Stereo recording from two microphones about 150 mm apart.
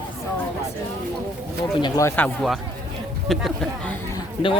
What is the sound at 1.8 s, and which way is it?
Speech, 20° left (ahead or behind).